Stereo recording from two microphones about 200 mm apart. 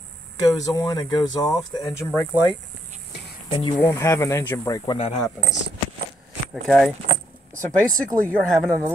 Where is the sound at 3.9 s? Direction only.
15° left (ahead or behind).